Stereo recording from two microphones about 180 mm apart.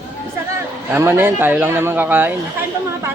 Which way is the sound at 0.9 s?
10° right (ahead or behind).